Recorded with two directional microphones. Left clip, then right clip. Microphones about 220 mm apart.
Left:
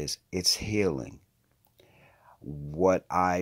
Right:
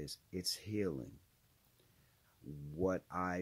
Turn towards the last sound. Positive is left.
turn(degrees=-10)  # may be behind; listen again after turning